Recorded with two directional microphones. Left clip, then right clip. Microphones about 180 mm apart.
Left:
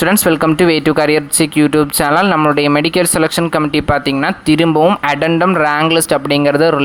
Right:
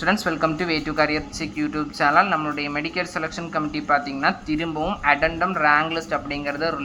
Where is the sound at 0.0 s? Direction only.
40° left (ahead or behind).